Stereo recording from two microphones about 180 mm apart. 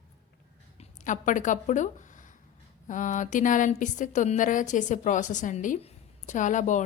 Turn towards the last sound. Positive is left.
turn(degrees=45)  # may be behind; listen again after turning